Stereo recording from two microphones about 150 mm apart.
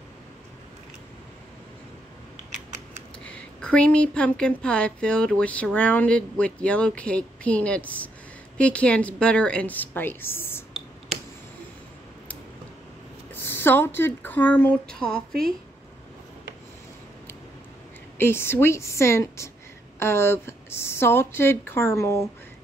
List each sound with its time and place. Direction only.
3.3 s a woman's voice: 10° left (ahead or behind)
13.3 s a woman's voice: 15° left (ahead or behind)
18.1 s a woman's voice: 15° left (ahead or behind)